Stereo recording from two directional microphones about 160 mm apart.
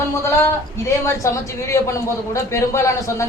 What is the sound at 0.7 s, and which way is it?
A woman's voice, 15° left (ahead or behind).